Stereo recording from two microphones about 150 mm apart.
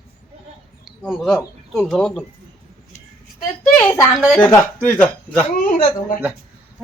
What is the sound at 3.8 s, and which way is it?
Speech, 10° left (ahead or behind).